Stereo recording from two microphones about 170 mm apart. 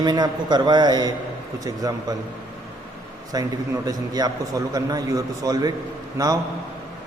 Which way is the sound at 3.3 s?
20° right (ahead or behind).